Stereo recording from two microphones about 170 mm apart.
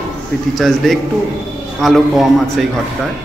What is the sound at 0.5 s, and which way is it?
A man's voice, centre (ahead or behind).